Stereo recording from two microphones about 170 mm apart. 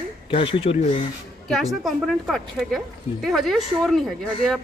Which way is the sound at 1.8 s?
Centre (ahead or behind).